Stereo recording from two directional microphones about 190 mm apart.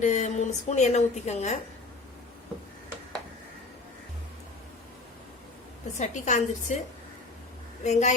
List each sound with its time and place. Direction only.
0.0 s a woman's voice: 40° left (ahead or behind)
6.0 s a woman's voice: 40° left (ahead or behind)
7.9 s a woman's voice: 40° left (ahead or behind)